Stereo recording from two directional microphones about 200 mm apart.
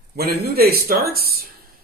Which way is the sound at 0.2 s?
50° right (ahead or behind).